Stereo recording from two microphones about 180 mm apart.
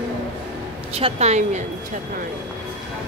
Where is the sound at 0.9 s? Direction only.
35° right (ahead or behind).